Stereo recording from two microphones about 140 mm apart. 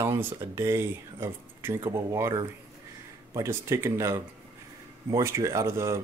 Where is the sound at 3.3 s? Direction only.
20° right (ahead or behind).